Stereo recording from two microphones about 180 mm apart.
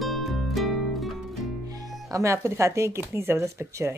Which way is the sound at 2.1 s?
15° right (ahead or behind).